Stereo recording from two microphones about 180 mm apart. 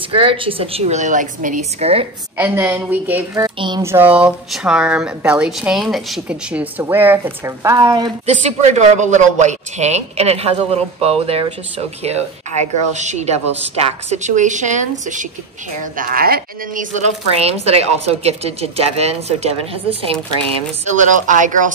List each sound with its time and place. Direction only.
0.1 s speech: 30° right (ahead or behind)
2.3 s speech: 10° right (ahead or behind)
3.4 s speech: 25° right (ahead or behind)
3.8 s speech: 10° right (ahead or behind)
8.3 s speech: 40° right (ahead or behind)
16.0 s a woman's voice: 55° right (ahead or behind)
17.4 s a woman's voice: 35° right (ahead or behind)